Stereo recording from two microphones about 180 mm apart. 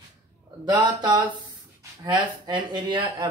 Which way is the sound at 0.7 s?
25° right (ahead or behind).